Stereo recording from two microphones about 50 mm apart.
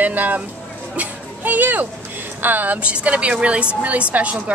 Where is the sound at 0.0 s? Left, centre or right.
Right.